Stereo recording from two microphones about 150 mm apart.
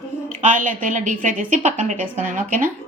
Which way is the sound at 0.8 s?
60° right (ahead or behind).